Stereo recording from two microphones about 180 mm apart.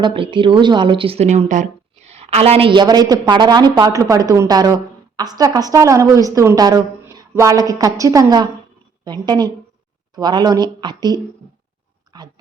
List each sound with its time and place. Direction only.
0.0 s a woman's voice: 30° right (ahead or behind)
12.1 s dog: 20° right (ahead or behind)